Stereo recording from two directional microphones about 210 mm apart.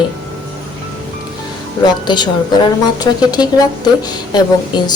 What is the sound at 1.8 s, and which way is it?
A woman's voice, 20° left (ahead or behind).